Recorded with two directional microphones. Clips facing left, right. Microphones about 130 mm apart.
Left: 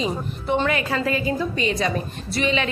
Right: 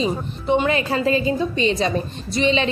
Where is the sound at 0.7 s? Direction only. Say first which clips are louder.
Right 3 dB; 30° right (ahead or behind).